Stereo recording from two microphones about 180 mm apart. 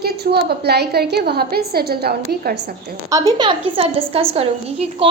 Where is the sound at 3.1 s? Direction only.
20° right (ahead or behind).